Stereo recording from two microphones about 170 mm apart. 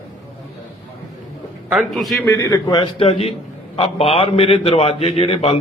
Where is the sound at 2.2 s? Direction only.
15° left (ahead or behind).